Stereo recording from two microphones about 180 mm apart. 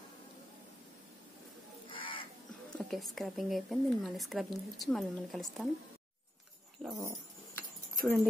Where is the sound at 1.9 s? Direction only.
30° left (ahead or behind).